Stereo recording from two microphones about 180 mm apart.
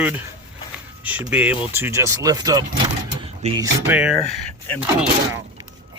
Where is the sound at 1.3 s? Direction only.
10° right (ahead or behind); by 3.7 s 25° right (ahead or behind).